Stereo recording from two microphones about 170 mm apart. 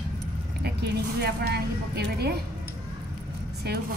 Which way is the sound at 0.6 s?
70° right (ahead or behind).